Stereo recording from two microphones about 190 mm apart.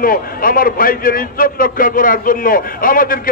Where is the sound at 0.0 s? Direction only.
50° left (ahead or behind).